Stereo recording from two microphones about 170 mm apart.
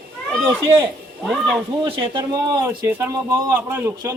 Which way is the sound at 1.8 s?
30° right (ahead or behind).